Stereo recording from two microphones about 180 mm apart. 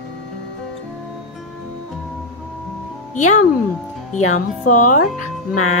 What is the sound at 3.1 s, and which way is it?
Speech, 40° left (ahead or behind).